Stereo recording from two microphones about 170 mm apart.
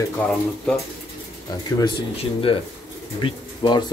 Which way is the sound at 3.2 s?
25° left (ahead or behind).